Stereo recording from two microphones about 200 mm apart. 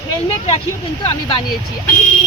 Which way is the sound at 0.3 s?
30° left (ahead or behind).